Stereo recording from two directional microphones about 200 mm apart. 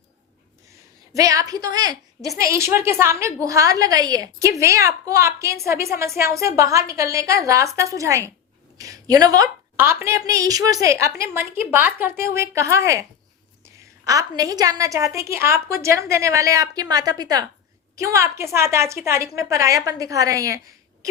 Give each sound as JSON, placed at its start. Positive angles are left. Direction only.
{"t": 1.1, "sound": "a woman's voice", "side_deg": -15}